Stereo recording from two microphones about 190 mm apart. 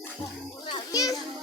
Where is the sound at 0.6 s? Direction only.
20° left (ahead or behind).